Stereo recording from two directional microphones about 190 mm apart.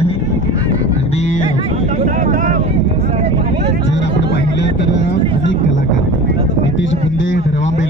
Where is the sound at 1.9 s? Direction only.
45° right (ahead or behind).